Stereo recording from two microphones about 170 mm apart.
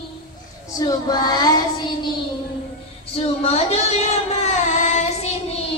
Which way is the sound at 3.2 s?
35° left (ahead or behind).